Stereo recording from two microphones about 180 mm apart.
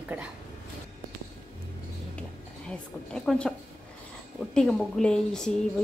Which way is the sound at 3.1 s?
5° left (ahead or behind).